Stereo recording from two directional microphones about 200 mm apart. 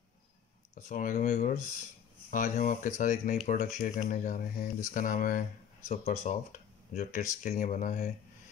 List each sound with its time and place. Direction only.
0.7 s speech: 40° left (ahead or behind)